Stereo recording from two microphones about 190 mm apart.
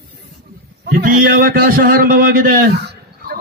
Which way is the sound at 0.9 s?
45° right (ahead or behind).